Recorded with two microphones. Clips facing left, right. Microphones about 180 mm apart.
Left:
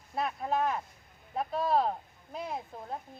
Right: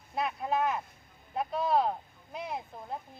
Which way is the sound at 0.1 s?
Centre (ahead or behind).